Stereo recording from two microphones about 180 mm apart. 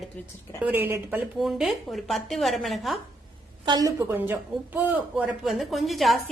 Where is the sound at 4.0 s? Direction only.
10° right (ahead or behind).